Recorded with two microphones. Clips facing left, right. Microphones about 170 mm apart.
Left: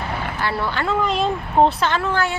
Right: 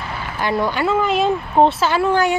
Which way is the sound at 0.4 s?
15° right (ahead or behind).